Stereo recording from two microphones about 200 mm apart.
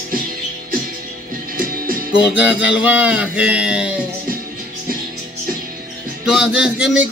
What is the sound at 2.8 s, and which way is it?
Music, 5° right (ahead or behind).